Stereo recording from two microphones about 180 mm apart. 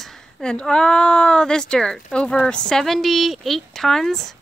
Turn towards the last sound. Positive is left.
turn(degrees=0)  # may be behind; listen again after turning